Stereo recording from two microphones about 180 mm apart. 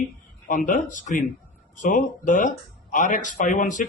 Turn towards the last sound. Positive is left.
turn(degrees=45)  # may be behind; listen again after turning